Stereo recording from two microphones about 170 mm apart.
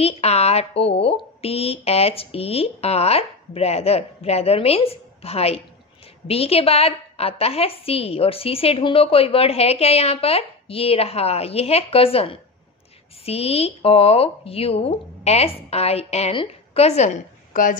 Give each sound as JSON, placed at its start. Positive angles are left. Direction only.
{"t": 0.0, "sound": "a woman's voice", "side_deg": 40}